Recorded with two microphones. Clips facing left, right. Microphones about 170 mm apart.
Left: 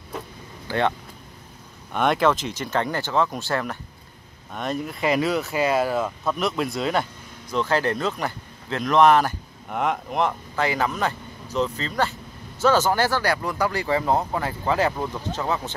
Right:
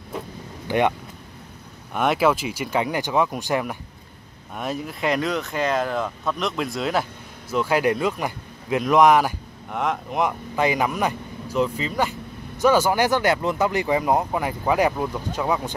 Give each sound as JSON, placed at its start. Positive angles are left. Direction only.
{"t": 0.7, "sound": "speech", "side_deg": -15}
{"t": 2.0, "sound": "speech", "side_deg": -5}
{"t": 4.6, "sound": "speech", "side_deg": -5}
{"t": 9.7, "sound": "speech", "side_deg": 0}
{"t": 10.2, "sound": "speech", "side_deg": -15}